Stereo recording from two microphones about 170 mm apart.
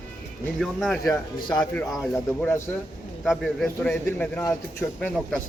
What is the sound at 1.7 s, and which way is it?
A man's voice, 5° left (ahead or behind).